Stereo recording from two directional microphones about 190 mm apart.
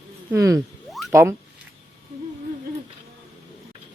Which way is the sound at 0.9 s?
Centre (ahead or behind).